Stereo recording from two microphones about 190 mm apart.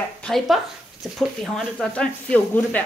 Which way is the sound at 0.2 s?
Centre (ahead or behind).